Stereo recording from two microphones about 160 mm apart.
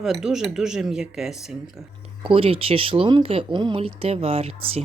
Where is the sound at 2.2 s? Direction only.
35° right (ahead or behind).